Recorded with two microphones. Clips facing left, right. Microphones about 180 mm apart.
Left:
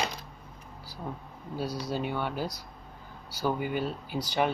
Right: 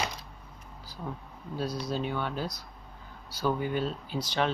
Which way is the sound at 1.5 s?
10° left (ahead or behind).